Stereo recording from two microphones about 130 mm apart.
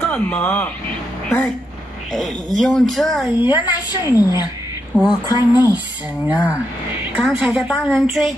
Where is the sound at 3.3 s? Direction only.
15° right (ahead or behind).